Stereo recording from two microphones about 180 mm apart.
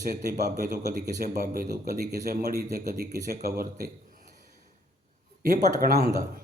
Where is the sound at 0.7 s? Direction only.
65° right (ahead or behind).